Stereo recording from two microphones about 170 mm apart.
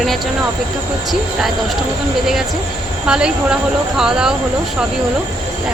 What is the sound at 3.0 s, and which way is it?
Speech, 5° right (ahead or behind).